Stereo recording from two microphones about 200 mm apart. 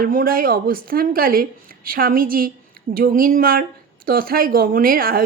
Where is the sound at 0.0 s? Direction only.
45° right (ahead or behind).